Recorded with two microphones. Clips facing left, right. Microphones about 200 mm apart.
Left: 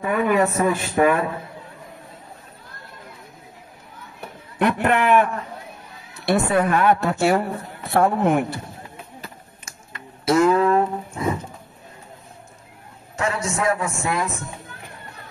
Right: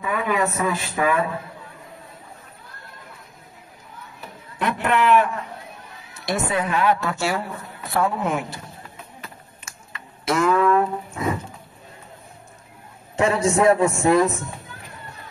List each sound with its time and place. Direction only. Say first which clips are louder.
0.0 s a woman's voice: left 4 dB; 55° left (ahead or behind)
4.6 s a woman's voice: left 2 dB; 55° left (ahead or behind)
10.2 s a sound: left 2 dB; 35° left (ahead or behind)
13.1 s a man's voice: right 6 dB; 30° right (ahead or behind)